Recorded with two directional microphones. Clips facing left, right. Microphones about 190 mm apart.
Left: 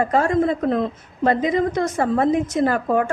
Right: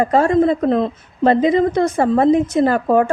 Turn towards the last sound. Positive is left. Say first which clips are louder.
# right 4 dB
turn(degrees=-30)  # may be behind; listen again after turning